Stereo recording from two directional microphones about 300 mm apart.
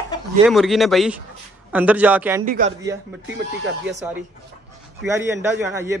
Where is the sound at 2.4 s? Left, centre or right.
Right.